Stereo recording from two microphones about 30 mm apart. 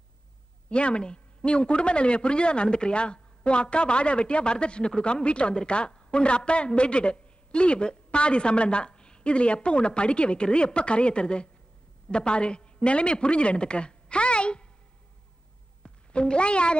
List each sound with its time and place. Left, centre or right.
0.7 s a woman's voice: left
16.1 s speech: left